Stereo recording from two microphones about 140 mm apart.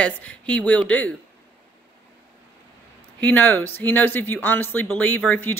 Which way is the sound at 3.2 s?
10° left (ahead or behind).